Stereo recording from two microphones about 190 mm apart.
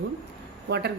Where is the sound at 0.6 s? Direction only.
60° right (ahead or behind).